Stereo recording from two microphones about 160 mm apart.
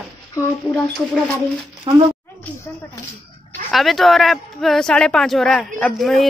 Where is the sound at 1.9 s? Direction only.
25° right (ahead or behind).